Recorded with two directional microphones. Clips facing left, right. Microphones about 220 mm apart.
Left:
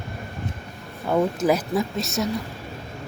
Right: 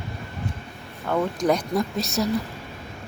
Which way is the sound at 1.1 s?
10° left (ahead or behind).